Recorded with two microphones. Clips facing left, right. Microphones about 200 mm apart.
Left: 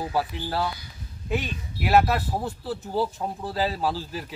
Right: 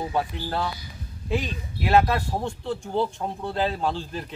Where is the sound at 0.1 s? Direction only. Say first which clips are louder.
Even; 5° left (ahead or behind).